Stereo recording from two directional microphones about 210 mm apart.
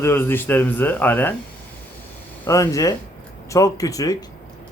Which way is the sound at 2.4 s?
15° left (ahead or behind).